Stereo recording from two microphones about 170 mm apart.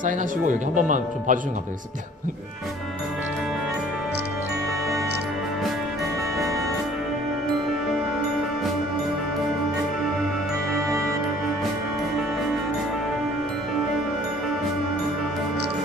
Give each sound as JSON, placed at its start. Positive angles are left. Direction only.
{"t": 0.0, "sound": "speech", "side_deg": -50}